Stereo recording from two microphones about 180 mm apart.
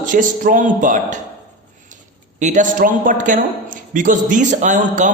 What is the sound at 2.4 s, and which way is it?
A man's voice, 45° right (ahead or behind).